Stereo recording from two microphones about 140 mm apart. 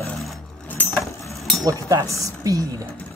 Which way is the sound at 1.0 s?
Centre (ahead or behind).